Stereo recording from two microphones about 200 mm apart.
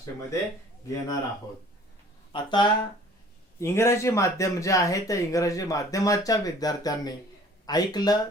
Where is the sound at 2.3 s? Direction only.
20° left (ahead or behind).